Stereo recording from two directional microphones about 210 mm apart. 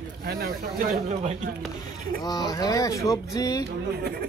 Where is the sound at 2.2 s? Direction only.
20° left (ahead or behind).